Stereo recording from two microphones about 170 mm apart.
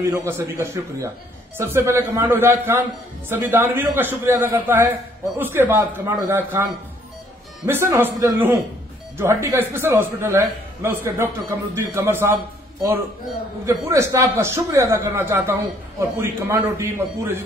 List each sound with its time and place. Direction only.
0.1 s a man's voice: 15° right (ahead or behind)
13.7 s a man's voice: 15° right (ahead or behind)